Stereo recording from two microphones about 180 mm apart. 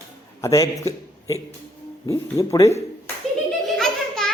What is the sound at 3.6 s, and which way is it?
Baby laughter, 5° left (ahead or behind).